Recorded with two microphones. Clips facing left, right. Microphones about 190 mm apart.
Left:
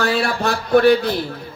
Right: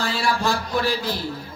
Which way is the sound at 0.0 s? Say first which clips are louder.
Left 4 dB; 60° left (ahead or behind).